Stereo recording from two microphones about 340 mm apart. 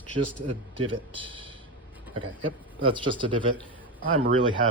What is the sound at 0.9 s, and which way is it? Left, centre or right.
Speech, centre.